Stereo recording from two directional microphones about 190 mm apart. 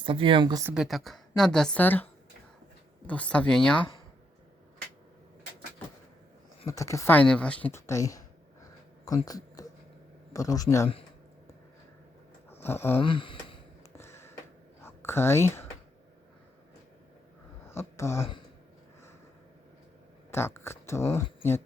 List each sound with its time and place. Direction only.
0.0 s speech: 25° right (ahead or behind)
0.7 s a woman's voice: centre (ahead or behind)
3.1 s a woman's voice: 5° left (ahead or behind)
6.7 s speech: 15° left (ahead or behind)
8.6 s a sound: 20° left (ahead or behind)
10.3 s speech: 20° left (ahead or behind)
12.5 s a sound: 10° left (ahead or behind)
13.0 s a sound: 25° left (ahead or behind)
13.9 s a sound: 15° left (ahead or behind)
14.8 s speech: 15° left (ahead or behind)
17.7 s speech: 15° left (ahead or behind)
20.3 s speech: 10° left (ahead or behind)
21.0 s speech: 35° left (ahead or behind)